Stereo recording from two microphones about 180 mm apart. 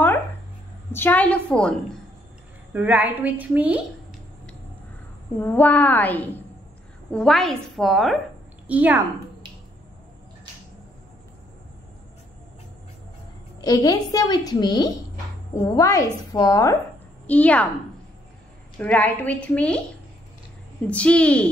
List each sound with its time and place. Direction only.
0.9 s a woman's voice: 10° left (ahead or behind)
2.7 s a woman's voice: 10° right (ahead or behind)
5.4 s a woman's voice: 10° left (ahead or behind); by 9.0 s 10° right (ahead or behind)
13.6 s a child's voice: 20° left (ahead or behind)
17.3 s a woman's voice: 10° left (ahead or behind)
18.8 s a woman's voice: 10° left (ahead or behind)
20.8 s a woman's voice: 5° left (ahead or behind)